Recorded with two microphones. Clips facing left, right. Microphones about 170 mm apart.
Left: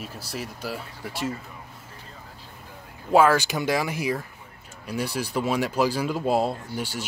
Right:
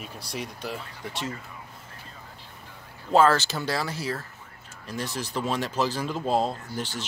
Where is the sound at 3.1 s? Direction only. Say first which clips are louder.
Left 2 dB; 10° left (ahead or behind).